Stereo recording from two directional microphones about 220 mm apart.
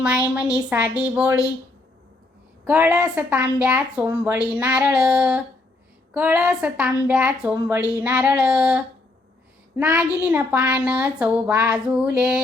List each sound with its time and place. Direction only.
0.0 s speech: 5° right (ahead or behind)
2.6 s speech: 5° right (ahead or behind)